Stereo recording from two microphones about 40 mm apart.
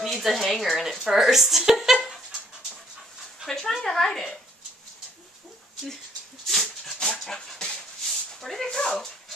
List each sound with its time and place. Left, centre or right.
0.0 s a woman's voice: centre
3.4 s speech: centre
6.4 s dog: centre
8.4 s speech: centre
8.6 s speech: centre